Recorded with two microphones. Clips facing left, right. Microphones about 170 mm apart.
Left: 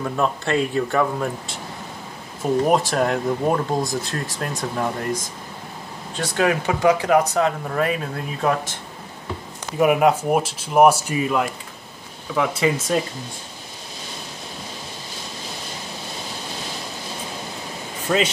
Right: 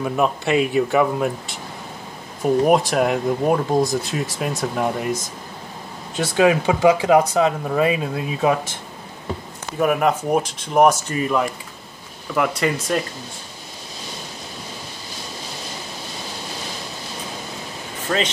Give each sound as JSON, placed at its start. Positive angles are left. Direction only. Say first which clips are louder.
{"t": 0.0, "sound": "speech", "louder": "right 2 dB", "side_deg": -15}
{"t": 2.7, "sound": "speech", "louder": "right 2 dB", "side_deg": 0}
{"t": 4.7, "sound": "speech", "louder": "right 1 dB", "side_deg": -15}
{"t": 6.1, "sound": "speech", "louder": "right 4 dB", "side_deg": -15}
{"t": 9.8, "sound": "speech", "louder": "left 2 dB", "side_deg": 10}
{"t": 18.1, "sound": "speech", "louder": "left 2 dB", "side_deg": 5}